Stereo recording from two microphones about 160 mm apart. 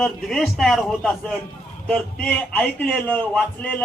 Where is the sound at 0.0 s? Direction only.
Centre (ahead or behind).